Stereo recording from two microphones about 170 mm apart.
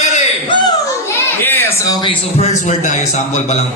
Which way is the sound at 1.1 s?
10° left (ahead or behind).